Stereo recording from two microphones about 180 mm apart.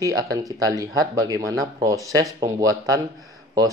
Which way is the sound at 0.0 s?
20° right (ahead or behind).